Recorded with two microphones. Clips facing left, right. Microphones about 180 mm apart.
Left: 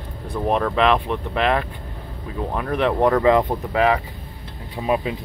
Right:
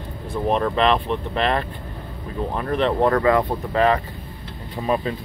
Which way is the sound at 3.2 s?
20° left (ahead or behind).